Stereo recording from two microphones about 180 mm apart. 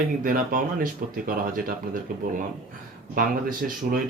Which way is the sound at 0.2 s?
50° right (ahead or behind).